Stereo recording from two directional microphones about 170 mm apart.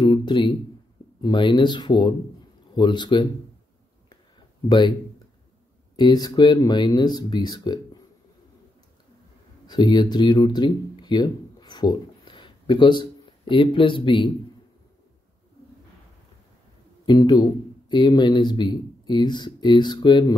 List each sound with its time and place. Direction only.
0.0 s speech: 25° left (ahead or behind)
4.6 s speech: 25° left (ahead or behind)
5.9 s speech: 25° left (ahead or behind)
9.7 s speech: 25° left (ahead or behind)
17.0 s speech: 25° left (ahead or behind)